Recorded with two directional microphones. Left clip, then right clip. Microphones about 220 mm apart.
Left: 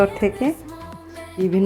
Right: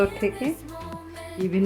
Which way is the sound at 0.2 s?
20° left (ahead or behind).